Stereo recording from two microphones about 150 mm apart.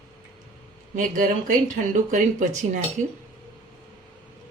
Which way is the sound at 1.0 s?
60° right (ahead or behind).